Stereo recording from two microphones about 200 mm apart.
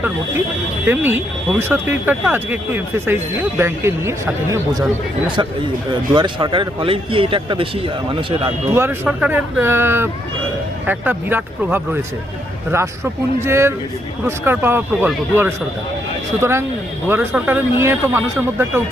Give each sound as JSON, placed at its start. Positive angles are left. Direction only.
{"t": 0.9, "sound": "speech", "side_deg": -10}
{"t": 5.9, "sound": "speech", "side_deg": -25}
{"t": 8.7, "sound": "speech", "side_deg": -10}
{"t": 13.4, "sound": "speech", "side_deg": -15}